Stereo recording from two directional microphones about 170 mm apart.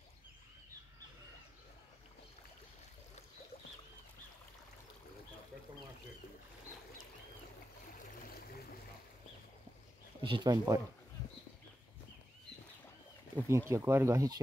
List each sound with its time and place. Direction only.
8.3 s stream: 60° left (ahead or behind)
10.2 s speech: 25° right (ahead or behind)
13.4 s speech: 15° right (ahead or behind)